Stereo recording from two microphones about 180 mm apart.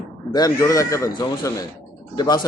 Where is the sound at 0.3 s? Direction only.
20° left (ahead or behind).